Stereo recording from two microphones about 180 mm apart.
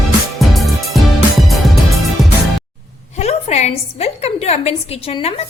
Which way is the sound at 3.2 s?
35° left (ahead or behind).